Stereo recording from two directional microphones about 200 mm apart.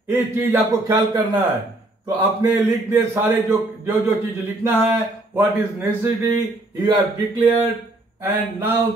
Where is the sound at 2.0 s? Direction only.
20° right (ahead or behind).